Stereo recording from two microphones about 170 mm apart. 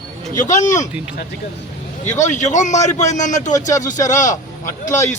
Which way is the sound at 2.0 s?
45° left (ahead or behind).